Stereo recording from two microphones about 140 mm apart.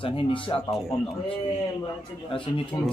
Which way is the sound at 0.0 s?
40° left (ahead or behind).